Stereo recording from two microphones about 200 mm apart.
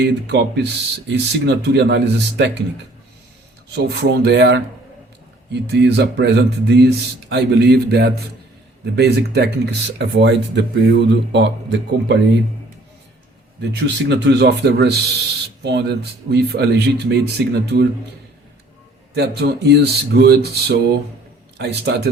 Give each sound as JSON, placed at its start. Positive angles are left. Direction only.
{"t": 0.0, "sound": "speech", "side_deg": -60}
{"t": 3.7, "sound": "speech", "side_deg": -55}
{"t": 5.7, "sound": "speech", "side_deg": -55}
{"t": 14.1, "sound": "speech", "side_deg": -60}
{"t": 19.1, "sound": "speech", "side_deg": -55}